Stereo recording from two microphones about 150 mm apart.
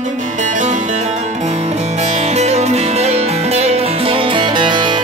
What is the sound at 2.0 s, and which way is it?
Music, 50° right (ahead or behind).